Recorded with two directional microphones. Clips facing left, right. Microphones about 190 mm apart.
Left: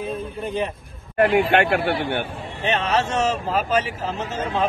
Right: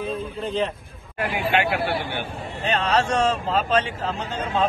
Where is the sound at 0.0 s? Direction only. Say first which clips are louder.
Even; 55° left (ahead or behind).